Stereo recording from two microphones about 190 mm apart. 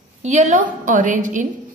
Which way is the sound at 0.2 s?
40° right (ahead or behind).